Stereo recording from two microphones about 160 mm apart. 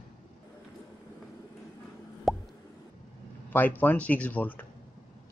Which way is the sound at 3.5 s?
10° left (ahead or behind).